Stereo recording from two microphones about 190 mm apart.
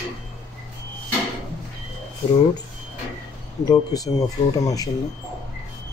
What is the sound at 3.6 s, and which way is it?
Speech, 20° left (ahead or behind).